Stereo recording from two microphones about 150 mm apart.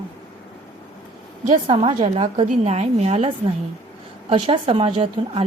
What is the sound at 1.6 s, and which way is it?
A woman's voice, 40° right (ahead or behind).